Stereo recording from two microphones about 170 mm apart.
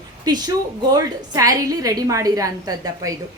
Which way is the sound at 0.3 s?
25° right (ahead or behind).